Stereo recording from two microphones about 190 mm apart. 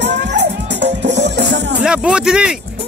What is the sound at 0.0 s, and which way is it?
Music, 65° right (ahead or behind).